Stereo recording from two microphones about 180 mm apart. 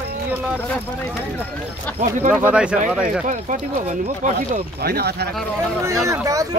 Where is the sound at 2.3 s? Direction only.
5° right (ahead or behind).